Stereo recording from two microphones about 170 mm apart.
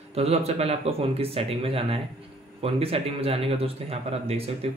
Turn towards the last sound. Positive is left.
turn(degrees=-35)  # may be behind; listen again after turning